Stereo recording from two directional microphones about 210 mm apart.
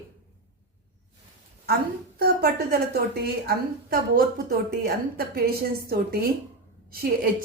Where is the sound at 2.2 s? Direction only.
50° right (ahead or behind).